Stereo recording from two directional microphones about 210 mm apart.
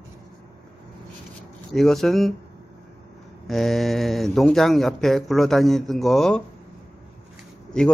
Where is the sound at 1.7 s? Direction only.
Centre (ahead or behind).